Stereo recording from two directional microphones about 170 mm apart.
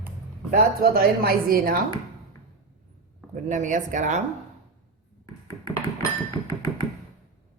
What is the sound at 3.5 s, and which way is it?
Speech, 45° right (ahead or behind).